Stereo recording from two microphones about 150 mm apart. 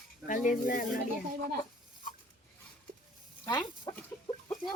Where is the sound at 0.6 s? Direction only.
65° left (ahead or behind).